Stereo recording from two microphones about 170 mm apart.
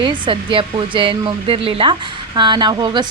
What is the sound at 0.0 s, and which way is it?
Speech, 30° right (ahead or behind).